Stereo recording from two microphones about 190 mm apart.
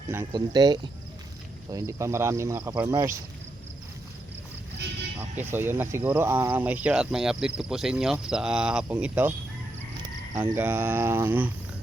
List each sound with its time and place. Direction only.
0.3 s speech: 20° right (ahead or behind)
5.4 s speech: 10° right (ahead or behind)
10.3 s speech: 10° right (ahead or behind)